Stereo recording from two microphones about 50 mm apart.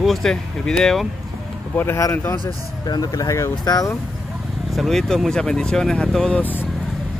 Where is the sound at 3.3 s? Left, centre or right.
Left.